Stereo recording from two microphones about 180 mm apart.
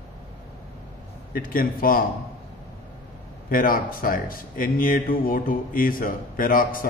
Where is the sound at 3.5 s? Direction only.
50° left (ahead or behind).